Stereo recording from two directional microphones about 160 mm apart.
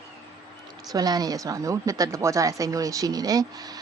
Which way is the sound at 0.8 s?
25° right (ahead or behind).